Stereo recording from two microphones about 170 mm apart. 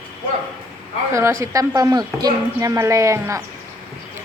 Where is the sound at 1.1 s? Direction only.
15° right (ahead or behind).